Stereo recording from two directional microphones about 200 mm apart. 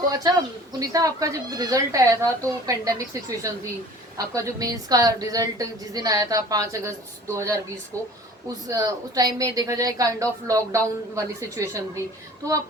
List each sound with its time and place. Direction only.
0.1 s a woman's voice: 20° right (ahead or behind)